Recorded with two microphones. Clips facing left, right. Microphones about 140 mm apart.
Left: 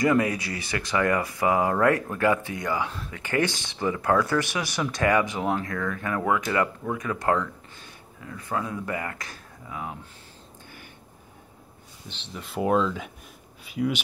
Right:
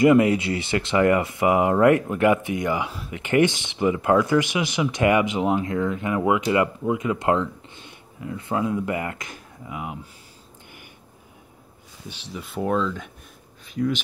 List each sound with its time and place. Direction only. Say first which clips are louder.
0.0 s speech: right 6 dB; 20° right (ahead or behind)
2.9 s speech: right 3 dB; 10° right (ahead or behind)
3.2 s speech: right 6 dB; 20° right (ahead or behind)
12.1 s speech: right 3 dB; 5° right (ahead or behind)